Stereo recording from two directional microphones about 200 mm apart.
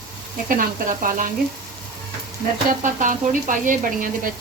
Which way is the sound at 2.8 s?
40° right (ahead or behind).